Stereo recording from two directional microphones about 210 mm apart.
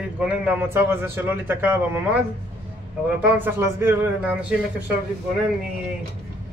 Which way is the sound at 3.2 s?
10° right (ahead or behind).